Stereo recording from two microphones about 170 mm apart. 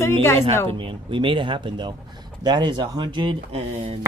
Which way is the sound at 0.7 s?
30° right (ahead or behind).